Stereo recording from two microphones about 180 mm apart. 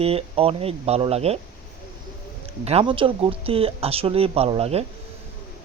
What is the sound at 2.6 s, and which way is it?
Speech, 30° right (ahead or behind).